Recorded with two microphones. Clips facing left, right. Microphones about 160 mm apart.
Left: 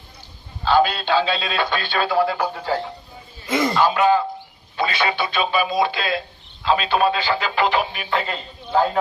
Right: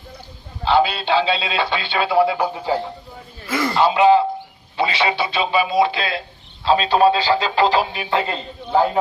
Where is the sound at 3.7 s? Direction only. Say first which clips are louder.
Right 5 dB; 20° right (ahead or behind).